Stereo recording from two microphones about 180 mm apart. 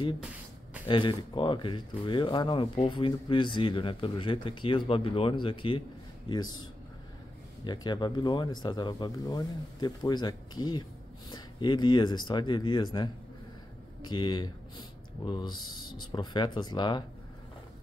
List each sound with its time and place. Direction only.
0.8 s a man's voice: 25° left (ahead or behind)
7.6 s speech: 25° left (ahead or behind)